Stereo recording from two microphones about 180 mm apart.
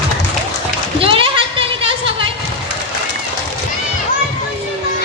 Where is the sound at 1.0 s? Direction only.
30° right (ahead or behind).